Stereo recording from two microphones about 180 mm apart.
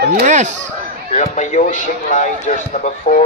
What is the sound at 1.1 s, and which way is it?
A man's voice, 40° left (ahead or behind).